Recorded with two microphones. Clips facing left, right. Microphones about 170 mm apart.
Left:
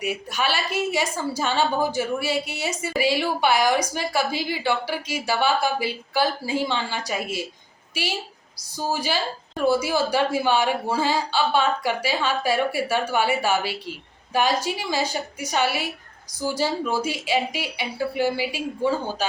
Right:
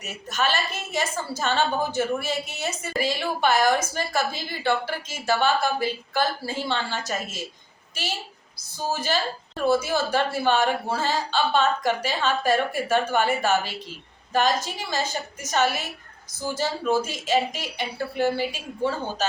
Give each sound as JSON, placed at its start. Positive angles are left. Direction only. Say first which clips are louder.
{"t": 0.0, "sound": "a woman's voice", "louder": "left 1 dB", "side_deg": 10}
{"t": 8.9, "sound": "a woman's voice", "louder": "even", "side_deg": 10}